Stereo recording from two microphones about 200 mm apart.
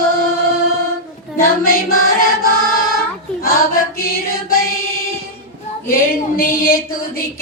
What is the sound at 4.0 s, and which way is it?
Mantra, 50° left (ahead or behind).